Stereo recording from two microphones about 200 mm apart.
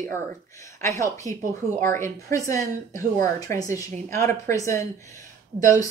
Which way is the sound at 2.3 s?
15° left (ahead or behind).